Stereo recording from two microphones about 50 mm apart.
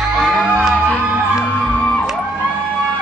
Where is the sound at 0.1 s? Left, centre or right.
Right.